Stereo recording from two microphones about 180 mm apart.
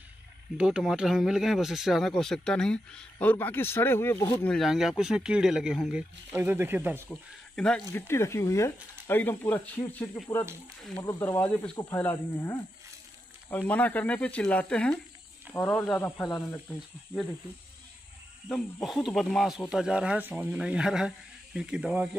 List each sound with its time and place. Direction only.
0.6 s speech: 5° right (ahead or behind)
7.1 s speech: 5° left (ahead or behind)
7.9 s speech: 15° left (ahead or behind)
11.0 s speech: 25° left (ahead or behind)
11.9 s speech: 10° left (ahead or behind)
18.5 s speech: centre (ahead or behind)